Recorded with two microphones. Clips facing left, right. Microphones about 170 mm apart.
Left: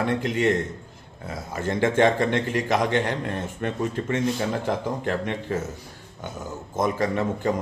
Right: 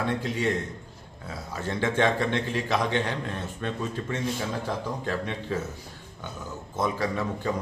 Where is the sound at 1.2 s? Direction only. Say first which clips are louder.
Left 4 dB; 50° left (ahead or behind).